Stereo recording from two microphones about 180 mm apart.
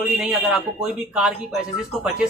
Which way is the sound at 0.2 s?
5° right (ahead or behind).